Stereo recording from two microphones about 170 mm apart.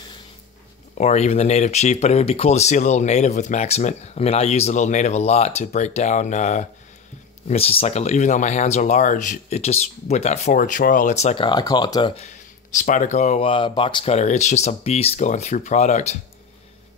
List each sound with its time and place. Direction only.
0.9 s speech: 40° left (ahead or behind)
11.4 s speech: 25° left (ahead or behind)
12.3 s speech: 50° left (ahead or behind)